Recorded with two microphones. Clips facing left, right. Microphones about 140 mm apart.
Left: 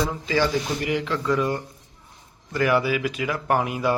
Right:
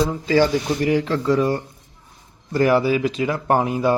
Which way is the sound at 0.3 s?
35° right (ahead or behind).